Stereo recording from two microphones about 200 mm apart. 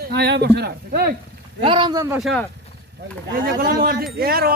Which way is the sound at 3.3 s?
45° right (ahead or behind).